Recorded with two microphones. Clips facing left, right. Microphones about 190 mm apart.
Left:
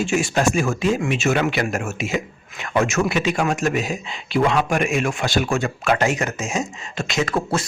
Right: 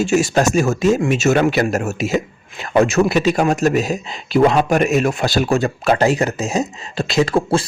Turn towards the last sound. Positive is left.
turn(degrees=-30)  # may be behind; listen again after turning